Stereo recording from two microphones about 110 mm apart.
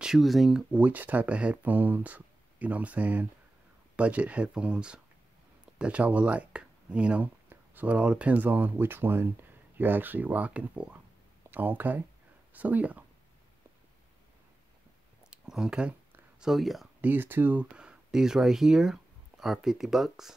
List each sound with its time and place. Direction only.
0.0 s speech: centre (ahead or behind)
15.2 s a sound: 5° right (ahead or behind)
17.0 s speech: 20° right (ahead or behind); by 20.3 s 5° right (ahead or behind)